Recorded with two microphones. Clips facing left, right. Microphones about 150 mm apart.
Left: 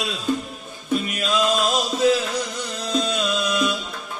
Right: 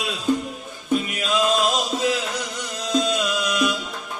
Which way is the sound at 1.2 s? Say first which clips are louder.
Even; 15° right (ahead or behind).